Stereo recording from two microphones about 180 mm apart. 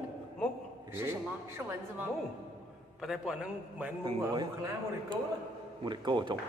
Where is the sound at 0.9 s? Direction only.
10° right (ahead or behind).